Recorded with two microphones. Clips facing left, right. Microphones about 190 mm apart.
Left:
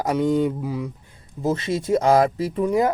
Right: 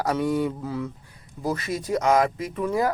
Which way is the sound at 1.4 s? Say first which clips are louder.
Left 5 dB; 25° left (ahead or behind).